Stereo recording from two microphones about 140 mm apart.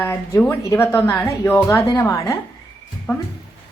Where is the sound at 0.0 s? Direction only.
15° left (ahead or behind).